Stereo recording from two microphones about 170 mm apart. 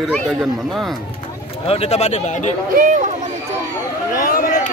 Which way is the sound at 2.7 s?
50° right (ahead or behind).